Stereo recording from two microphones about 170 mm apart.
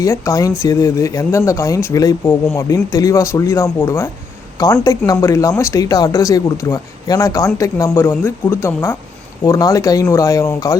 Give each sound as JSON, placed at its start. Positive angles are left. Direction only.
{"t": 0.0, "sound": "speech", "side_deg": 20}